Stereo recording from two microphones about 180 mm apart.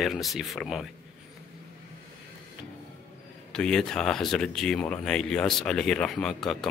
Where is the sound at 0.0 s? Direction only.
Centre (ahead or behind).